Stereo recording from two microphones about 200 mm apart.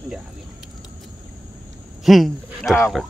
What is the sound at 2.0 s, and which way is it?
Speech, centre (ahead or behind).